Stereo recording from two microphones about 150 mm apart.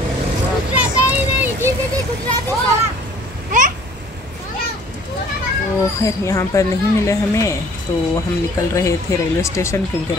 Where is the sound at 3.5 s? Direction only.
60° right (ahead or behind).